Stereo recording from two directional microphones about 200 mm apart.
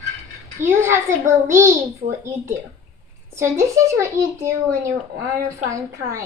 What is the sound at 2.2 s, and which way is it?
Speech, 15° right (ahead or behind).